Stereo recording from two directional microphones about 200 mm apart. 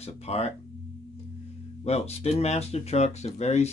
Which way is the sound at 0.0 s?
30° left (ahead or behind).